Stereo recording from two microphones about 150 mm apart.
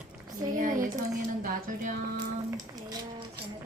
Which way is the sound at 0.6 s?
60° right (ahead or behind).